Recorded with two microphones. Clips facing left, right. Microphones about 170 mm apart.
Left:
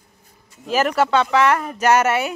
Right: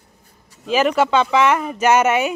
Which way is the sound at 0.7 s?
5° left (ahead or behind).